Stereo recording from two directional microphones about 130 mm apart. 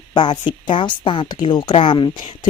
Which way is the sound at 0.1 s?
35° left (ahead or behind).